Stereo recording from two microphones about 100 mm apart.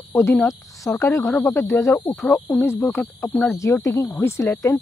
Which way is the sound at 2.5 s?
Centre (ahead or behind).